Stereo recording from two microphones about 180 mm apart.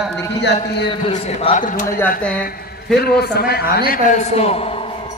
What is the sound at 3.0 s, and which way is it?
A man's voice, 60° left (ahead or behind).